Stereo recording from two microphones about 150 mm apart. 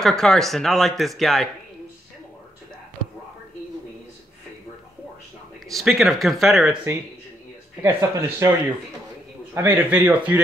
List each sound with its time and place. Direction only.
0.0 s speech: 5° left (ahead or behind)
5.7 s speech: centre (ahead or behind)
7.8 s speech: 20° right (ahead or behind)